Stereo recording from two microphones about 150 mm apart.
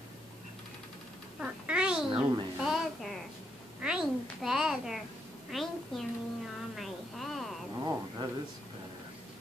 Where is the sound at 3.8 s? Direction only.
5° right (ahead or behind).